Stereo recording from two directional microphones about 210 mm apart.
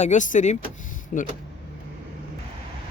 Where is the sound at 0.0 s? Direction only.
35° left (ahead or behind).